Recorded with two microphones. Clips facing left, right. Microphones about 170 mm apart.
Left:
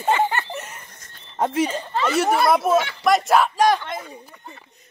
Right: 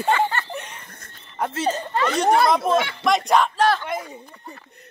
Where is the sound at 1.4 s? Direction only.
15° left (ahead or behind).